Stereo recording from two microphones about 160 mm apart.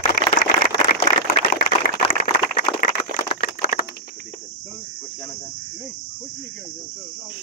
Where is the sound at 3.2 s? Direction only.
50° left (ahead or behind).